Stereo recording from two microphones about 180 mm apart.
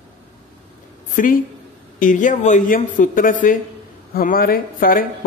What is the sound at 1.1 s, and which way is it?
A woman's voice, 50° left (ahead or behind).